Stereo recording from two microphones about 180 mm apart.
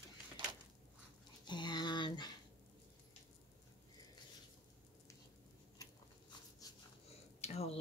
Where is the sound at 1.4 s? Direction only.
25° left (ahead or behind).